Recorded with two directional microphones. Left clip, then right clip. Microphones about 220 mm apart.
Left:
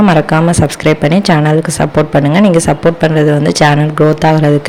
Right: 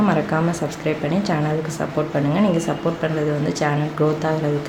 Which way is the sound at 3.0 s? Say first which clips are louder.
Left 12 dB; 40° left (ahead or behind).